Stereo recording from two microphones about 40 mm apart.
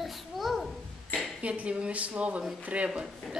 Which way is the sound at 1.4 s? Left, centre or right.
Right.